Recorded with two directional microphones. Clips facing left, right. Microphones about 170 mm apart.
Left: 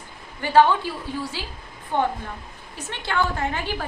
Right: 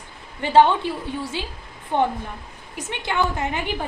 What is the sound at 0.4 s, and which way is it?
A woman's voice, 25° right (ahead or behind).